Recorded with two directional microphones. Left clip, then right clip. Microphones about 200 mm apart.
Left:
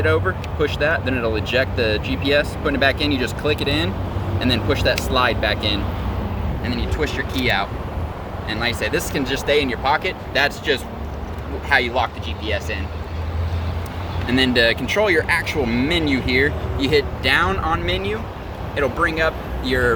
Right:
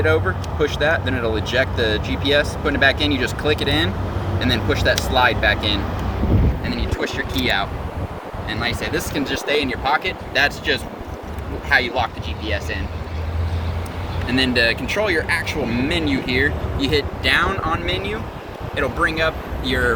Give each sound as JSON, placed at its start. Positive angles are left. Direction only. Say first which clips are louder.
{"t": 0.1, "sound": "speech", "louder": "right 1 dB", "side_deg": 25}
{"t": 6.7, "sound": "speech", "louder": "left 3 dB", "side_deg": 40}
{"t": 8.4, "sound": "speech", "louder": "left 2 dB", "side_deg": 55}
{"t": 14.3, "sound": "speech", "louder": "left 1 dB", "side_deg": 50}